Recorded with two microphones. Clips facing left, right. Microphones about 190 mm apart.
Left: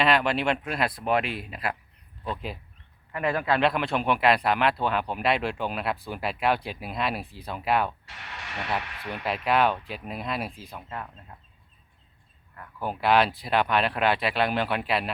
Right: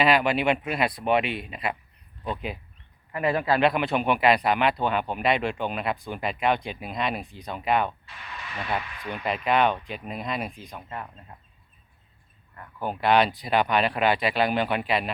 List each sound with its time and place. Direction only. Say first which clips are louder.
0.0 s a man's voice: right 2 dB; centre (ahead or behind)
8.0 s speech: right 1 dB; 75° left (ahead or behind)
9.0 s a man's voice: right 1 dB; 5° left (ahead or behind)
12.5 s a man's voice: right 1 dB; 5° left (ahead or behind)